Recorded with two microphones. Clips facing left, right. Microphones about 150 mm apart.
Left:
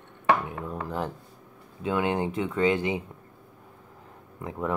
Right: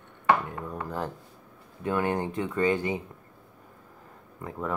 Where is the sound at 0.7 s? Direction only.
15° left (ahead or behind).